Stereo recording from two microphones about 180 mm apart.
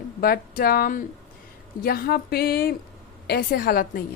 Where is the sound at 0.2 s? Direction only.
55° left (ahead or behind).